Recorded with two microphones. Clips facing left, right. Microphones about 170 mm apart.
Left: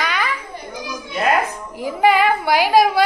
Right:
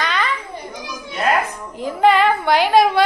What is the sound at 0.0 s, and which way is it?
Children playing, 5° left (ahead or behind).